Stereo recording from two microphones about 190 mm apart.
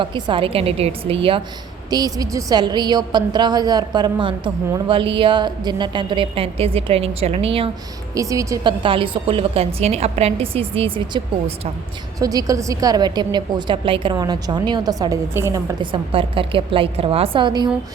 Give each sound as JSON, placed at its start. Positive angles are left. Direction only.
{"t": 0.0, "sound": "a woman's voice", "side_deg": -25}
{"t": 8.1, "sound": "a woman's voice", "side_deg": -15}
{"t": 12.2, "sound": "a woman's voice", "side_deg": -20}
{"t": 15.8, "sound": "a woman's voice", "side_deg": -25}